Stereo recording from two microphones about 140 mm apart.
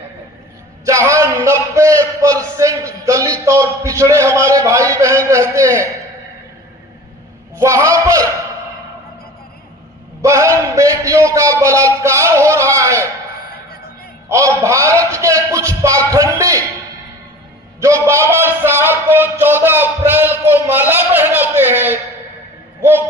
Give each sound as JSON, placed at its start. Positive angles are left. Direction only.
{"t": 0.9, "sound": "a man's voice", "side_deg": -20}
{"t": 7.5, "sound": "a man's voice", "side_deg": -20}
{"t": 10.2, "sound": "a man's voice", "side_deg": -20}
{"t": 14.3, "sound": "a man's voice", "side_deg": -20}
{"t": 17.7, "sound": "a sound", "side_deg": -20}